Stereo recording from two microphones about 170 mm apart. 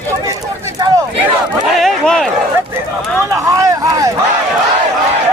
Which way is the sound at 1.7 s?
Centre (ahead or behind).